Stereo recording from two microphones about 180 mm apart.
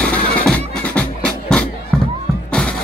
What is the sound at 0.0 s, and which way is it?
Music, 5° left (ahead or behind).